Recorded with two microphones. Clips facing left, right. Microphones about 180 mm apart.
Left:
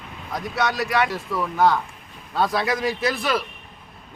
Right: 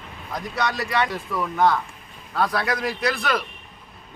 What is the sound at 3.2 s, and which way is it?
Speech, 5° left (ahead or behind).